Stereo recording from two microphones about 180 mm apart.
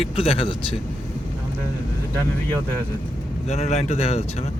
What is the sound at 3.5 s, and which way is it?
Speech, 40° left (ahead or behind).